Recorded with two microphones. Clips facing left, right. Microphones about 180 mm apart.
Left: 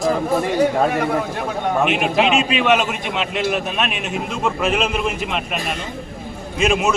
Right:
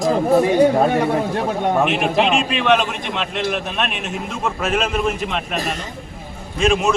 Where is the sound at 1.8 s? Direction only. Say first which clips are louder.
Even; 5° left (ahead or behind).